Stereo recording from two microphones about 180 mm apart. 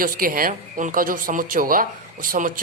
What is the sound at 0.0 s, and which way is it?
A woman's voice, 50° right (ahead or behind).